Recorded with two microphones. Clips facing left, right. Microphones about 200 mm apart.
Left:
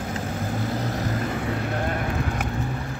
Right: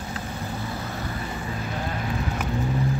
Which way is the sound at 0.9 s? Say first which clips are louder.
Left 5 dB; 45° left (ahead or behind).